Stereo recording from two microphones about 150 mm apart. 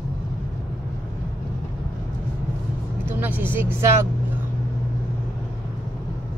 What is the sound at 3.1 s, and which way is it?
Vehicle, 10° right (ahead or behind).